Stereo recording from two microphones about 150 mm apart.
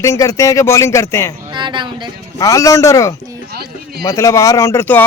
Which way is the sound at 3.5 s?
90° right.